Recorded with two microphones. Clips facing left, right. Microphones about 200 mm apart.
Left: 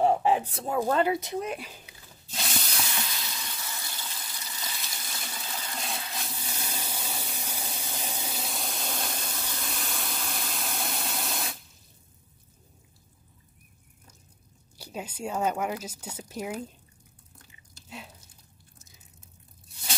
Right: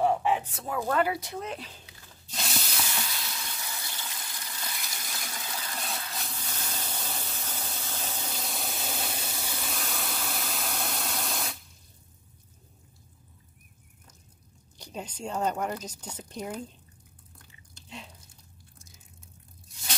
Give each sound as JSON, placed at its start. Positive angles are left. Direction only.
{"t": 0.0, "sound": "speech", "side_deg": 35}
{"t": 2.4, "sound": "spray", "side_deg": 0}
{"t": 3.0, "sound": "a sound", "side_deg": 5}
{"t": 4.4, "sound": "water", "side_deg": 5}
{"t": 14.8, "sound": "speech", "side_deg": 5}
{"t": 17.8, "sound": "a sound", "side_deg": 5}